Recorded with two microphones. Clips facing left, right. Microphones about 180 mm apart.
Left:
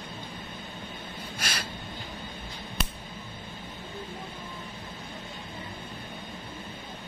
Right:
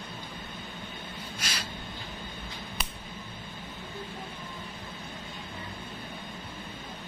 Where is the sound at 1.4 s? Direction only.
55° left (ahead or behind).